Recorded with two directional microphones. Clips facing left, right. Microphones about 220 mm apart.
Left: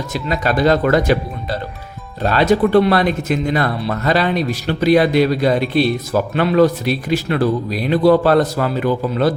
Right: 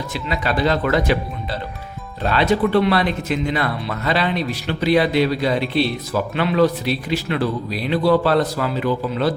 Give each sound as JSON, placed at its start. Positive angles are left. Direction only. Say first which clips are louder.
{"t": 0.1, "sound": "speech", "louder": "left 5 dB", "side_deg": 45}